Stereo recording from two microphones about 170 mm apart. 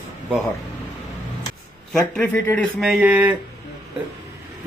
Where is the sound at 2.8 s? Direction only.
5° right (ahead or behind).